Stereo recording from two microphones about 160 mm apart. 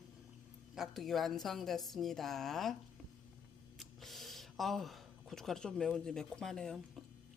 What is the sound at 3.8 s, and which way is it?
A woman's voice, centre (ahead or behind).